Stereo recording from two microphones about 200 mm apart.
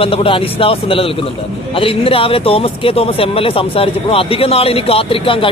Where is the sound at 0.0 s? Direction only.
25° left (ahead or behind).